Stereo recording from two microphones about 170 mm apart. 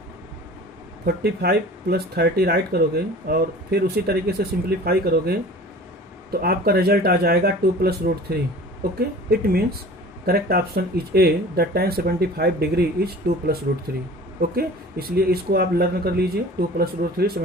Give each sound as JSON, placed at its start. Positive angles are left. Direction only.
{"t": 1.0, "sound": "speech", "side_deg": -65}